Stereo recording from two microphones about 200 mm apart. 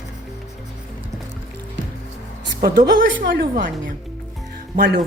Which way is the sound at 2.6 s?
55° right (ahead or behind).